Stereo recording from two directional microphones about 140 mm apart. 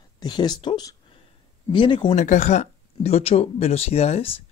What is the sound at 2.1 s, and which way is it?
Speech, 60° left (ahead or behind).